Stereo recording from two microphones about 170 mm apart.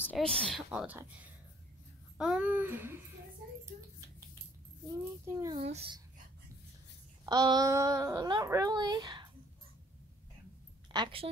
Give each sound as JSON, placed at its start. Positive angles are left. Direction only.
{"t": 0.0, "sound": "speech", "side_deg": 5}
{"t": 0.7, "sound": "a sound", "side_deg": -10}
{"t": 5.2, "sound": "a sound", "side_deg": -15}
{"t": 5.5, "sound": "a child's voice", "side_deg": -40}
{"t": 7.2, "sound": "speech", "side_deg": -25}
{"t": 10.9, "sound": "a woman's voice", "side_deg": -30}